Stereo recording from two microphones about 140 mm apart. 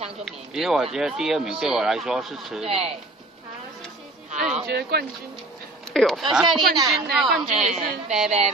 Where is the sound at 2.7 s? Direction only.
45° right (ahead or behind).